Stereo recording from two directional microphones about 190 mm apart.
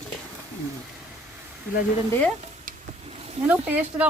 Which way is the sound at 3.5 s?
10° right (ahead or behind).